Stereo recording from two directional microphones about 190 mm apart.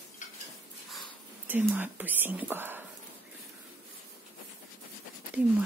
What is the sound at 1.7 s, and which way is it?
Speech, 10° right (ahead or behind).